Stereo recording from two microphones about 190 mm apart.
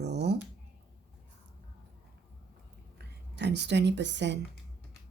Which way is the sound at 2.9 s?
60° right (ahead or behind).